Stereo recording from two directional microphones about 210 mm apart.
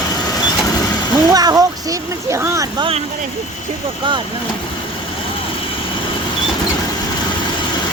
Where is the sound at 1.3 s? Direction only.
20° right (ahead or behind).